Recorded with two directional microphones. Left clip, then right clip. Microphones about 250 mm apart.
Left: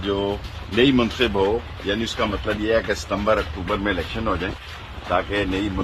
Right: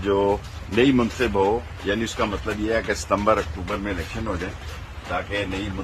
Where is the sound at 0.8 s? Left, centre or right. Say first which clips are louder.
Left 1 dB; centre.